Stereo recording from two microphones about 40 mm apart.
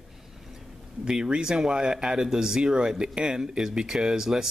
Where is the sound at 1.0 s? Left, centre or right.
Centre.